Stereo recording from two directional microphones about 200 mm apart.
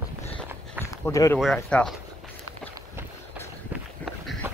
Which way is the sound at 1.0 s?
15° left (ahead or behind).